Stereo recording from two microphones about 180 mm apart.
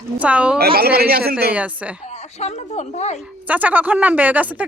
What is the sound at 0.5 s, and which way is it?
Speech, 60° right (ahead or behind).